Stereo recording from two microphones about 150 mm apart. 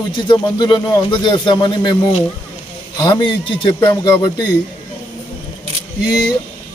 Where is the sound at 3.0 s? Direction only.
30° left (ahead or behind).